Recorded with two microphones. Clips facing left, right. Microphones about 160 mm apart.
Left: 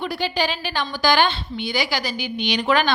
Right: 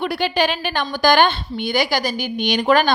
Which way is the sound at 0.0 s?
65° right (ahead or behind).